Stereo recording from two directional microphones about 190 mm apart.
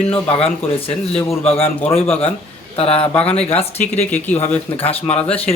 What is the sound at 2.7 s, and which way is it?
Speech, 30° left (ahead or behind).